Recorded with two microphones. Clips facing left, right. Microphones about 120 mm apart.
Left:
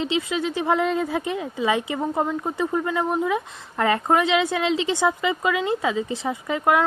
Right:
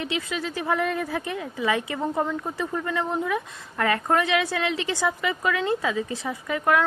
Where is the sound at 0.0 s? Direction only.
25° left (ahead or behind).